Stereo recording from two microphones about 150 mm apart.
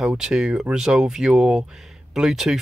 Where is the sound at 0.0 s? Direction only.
5° right (ahead or behind).